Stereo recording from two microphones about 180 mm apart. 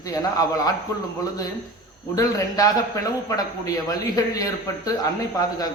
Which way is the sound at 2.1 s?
20° left (ahead or behind).